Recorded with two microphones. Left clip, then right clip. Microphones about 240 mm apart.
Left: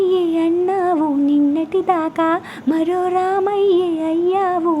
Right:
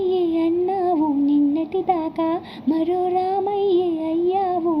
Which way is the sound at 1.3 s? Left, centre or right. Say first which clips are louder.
Left 3 dB; left.